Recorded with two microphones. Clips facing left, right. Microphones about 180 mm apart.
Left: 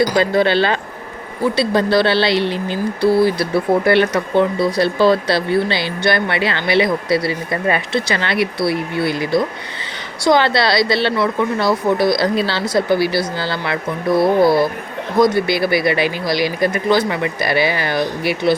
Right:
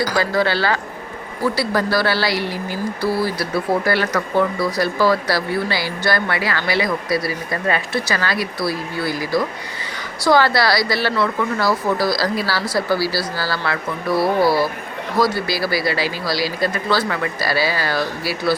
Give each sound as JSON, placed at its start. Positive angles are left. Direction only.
{"t": 0.0, "sound": "speech", "side_deg": 20}